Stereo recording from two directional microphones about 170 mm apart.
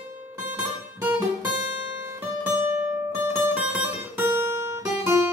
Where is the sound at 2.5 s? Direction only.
15° right (ahead or behind).